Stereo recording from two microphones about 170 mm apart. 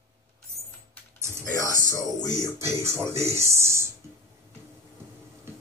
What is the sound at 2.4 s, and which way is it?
Speech, 15° right (ahead or behind).